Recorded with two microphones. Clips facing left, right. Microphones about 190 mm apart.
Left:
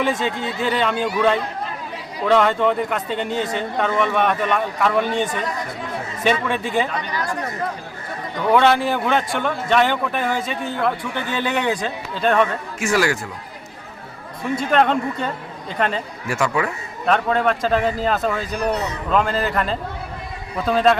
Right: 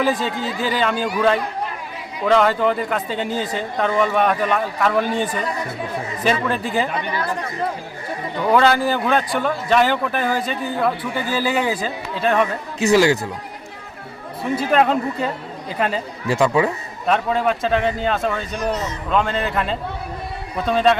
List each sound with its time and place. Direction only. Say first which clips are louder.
0.0 s a man's voice: right 1 dB; centre (ahead or behind)
2.2 s a man's voice: even; 5° right (ahead or behind)
8.5 s a man's voice: even; centre (ahead or behind)
12.9 s a man's voice: right 5 dB; 25° right (ahead or behind)
14.5 s a man's voice: right 1 dB; 5° right (ahead or behind)
16.3 s a man's voice: right 4 dB; 20° right (ahead or behind)
17.1 s a man's voice: even; centre (ahead or behind)
18.7 s a man's voice: even; 65° left (ahead or behind)
19.1 s a man's voice: even; centre (ahead or behind)